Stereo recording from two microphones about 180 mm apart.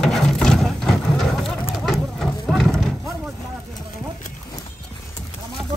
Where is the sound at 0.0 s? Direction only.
Centre (ahead or behind).